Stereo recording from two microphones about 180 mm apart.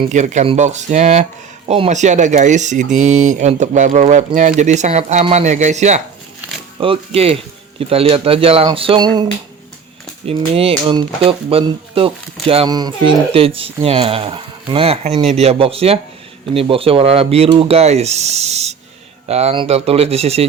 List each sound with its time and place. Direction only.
0.1 s speech: 40° right (ahead or behind)
6.7 s speech: 30° right (ahead or behind)
10.2 s speech: 35° right (ahead or behind)